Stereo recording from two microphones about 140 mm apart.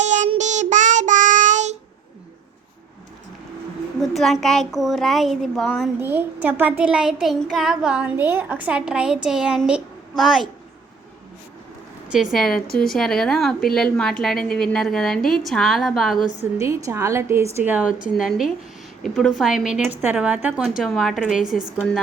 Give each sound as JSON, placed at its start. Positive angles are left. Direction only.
{"t": 0.0, "sound": "child singing", "side_deg": -60}
{"t": 4.0, "sound": "a woman's voice", "side_deg": 0}
{"t": 6.0, "sound": "a child's voice", "side_deg": -15}
{"t": 12.0, "sound": "a woman's voice", "side_deg": -5}
{"t": 16.6, "sound": "a woman's voice", "side_deg": -20}